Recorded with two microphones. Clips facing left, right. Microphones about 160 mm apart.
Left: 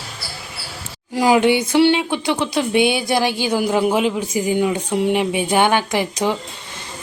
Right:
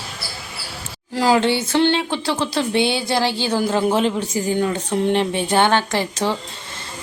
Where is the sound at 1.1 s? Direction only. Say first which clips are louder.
Left 2 dB; 15° left (ahead or behind).